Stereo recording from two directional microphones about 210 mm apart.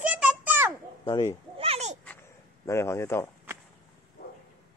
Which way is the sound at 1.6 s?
30° right (ahead or behind).